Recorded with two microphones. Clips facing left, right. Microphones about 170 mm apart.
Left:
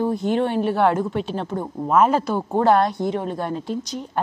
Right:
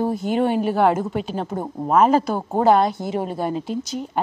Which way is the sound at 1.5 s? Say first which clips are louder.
Even; 20° right (ahead or behind).